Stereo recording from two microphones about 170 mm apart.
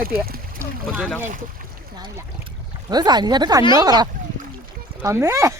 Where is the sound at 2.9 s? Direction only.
25° right (ahead or behind).